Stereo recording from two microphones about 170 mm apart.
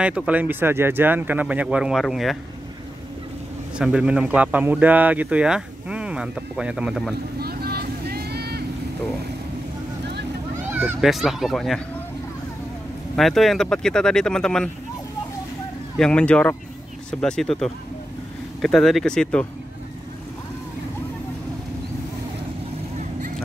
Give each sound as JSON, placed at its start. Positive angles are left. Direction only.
{"t": 0.0, "sound": "speech", "side_deg": -5}
{"t": 3.7, "sound": "speech", "side_deg": -5}
{"t": 7.3, "sound": "vehicle", "side_deg": -65}
{"t": 10.7, "sound": "speech", "side_deg": -10}
{"t": 13.1, "sound": "speech", "side_deg": 0}
{"t": 16.0, "sound": "speech", "side_deg": 5}